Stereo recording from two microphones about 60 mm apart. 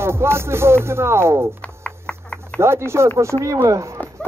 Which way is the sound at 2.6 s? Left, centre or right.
Right.